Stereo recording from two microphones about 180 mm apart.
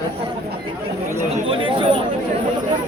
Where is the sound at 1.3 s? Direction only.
30° right (ahead or behind).